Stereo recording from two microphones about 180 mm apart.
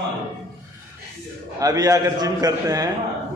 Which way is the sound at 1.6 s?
20° right (ahead or behind).